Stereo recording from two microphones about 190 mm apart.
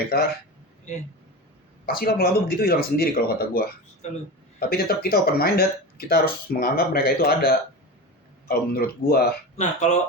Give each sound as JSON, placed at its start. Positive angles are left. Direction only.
{"t": 0.1, "sound": "speech", "side_deg": 55}
{"t": 0.9, "sound": "speech", "side_deg": 40}
{"t": 1.9, "sound": "speech", "side_deg": 50}
{"t": 4.7, "sound": "speech", "side_deg": 50}
{"t": 9.6, "sound": "speech", "side_deg": 40}